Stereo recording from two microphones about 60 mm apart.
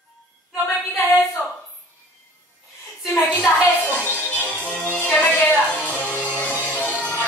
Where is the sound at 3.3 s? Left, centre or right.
Left.